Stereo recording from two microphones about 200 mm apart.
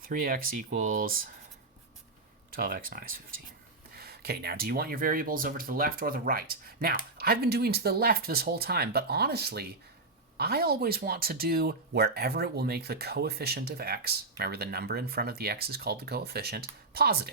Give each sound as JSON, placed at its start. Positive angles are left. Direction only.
{"t": 0.0, "sound": "speech", "side_deg": -45}
{"t": 2.5, "sound": "speech", "side_deg": -45}